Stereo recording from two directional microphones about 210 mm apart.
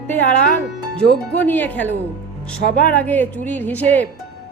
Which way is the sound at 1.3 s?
10° left (ahead or behind).